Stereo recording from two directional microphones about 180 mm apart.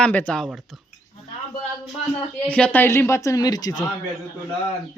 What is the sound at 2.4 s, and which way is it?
Speech, 10° left (ahead or behind).